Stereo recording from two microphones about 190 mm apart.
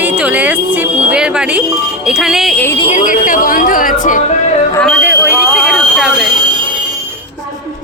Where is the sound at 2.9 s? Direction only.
45° left (ahead or behind).